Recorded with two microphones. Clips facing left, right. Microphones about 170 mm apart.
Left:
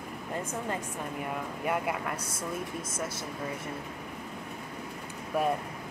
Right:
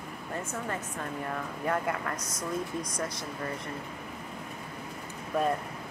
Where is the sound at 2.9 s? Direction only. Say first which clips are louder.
Right 1 dB; 5° left (ahead or behind).